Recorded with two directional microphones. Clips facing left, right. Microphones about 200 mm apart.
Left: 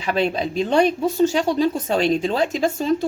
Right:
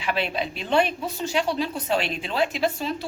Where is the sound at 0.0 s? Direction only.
40° left (ahead or behind).